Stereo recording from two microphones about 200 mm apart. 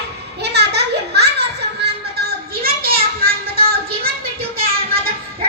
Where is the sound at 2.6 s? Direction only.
50° right (ahead or behind).